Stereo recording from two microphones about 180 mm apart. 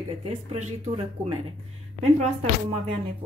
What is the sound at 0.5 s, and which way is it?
Speech, 35° right (ahead or behind).